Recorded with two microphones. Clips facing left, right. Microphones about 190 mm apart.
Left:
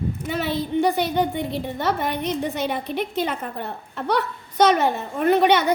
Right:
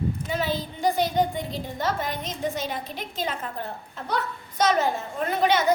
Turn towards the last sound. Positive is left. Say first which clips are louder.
# left 5 dB
turn(degrees=65)  # may be behind; listen again after turning